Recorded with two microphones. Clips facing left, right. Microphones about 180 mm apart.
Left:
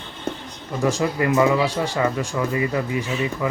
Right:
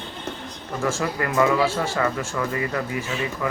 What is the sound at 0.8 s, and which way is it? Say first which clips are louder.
Speech: left 5 dB; 20° left (ahead or behind).